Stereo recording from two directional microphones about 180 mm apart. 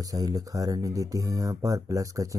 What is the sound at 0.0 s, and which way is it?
Speech, 20° right (ahead or behind).